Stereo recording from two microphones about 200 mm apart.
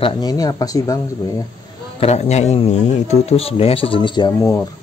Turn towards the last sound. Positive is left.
turn(degrees=20)  # may be behind; listen again after turning